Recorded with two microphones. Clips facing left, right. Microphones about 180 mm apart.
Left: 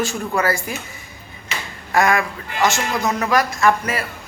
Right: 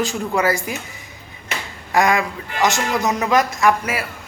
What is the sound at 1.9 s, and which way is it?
A man's voice, 15° right (ahead or behind).